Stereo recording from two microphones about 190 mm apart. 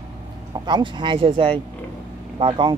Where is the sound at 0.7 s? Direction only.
25° right (ahead or behind).